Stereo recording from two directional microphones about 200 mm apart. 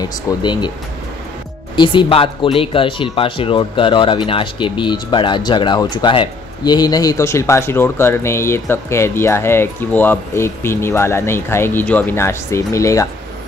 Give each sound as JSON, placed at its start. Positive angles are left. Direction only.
{"t": 0.0, "sound": "speech", "side_deg": 20}
{"t": 1.8, "sound": "speech", "side_deg": 25}